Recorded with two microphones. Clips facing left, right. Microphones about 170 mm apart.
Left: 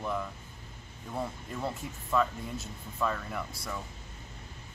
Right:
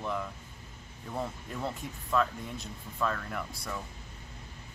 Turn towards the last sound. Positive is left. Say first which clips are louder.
# even
turn(degrees=5)  # may be behind; listen again after turning